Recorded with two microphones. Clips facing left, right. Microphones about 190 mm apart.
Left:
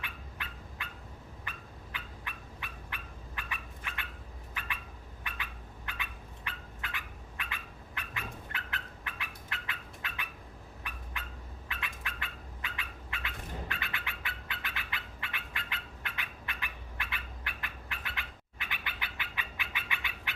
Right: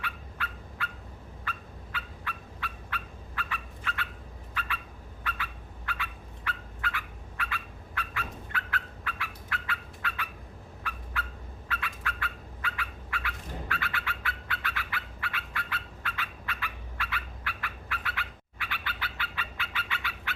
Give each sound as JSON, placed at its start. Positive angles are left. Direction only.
{"t": 0.0, "sound": "fowl", "side_deg": 20}
{"t": 5.2, "sound": "bird", "side_deg": 20}